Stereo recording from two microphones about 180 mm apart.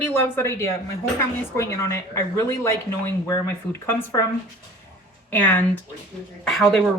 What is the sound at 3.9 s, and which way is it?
Speech, 10° left (ahead or behind).